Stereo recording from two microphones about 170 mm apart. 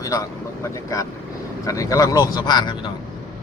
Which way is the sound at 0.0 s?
20° left (ahead or behind).